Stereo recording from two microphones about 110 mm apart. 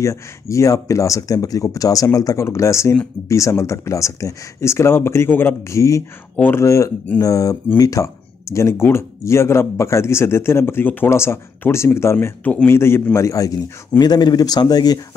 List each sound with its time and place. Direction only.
0.0 s a man's voice: 30° left (ahead or behind)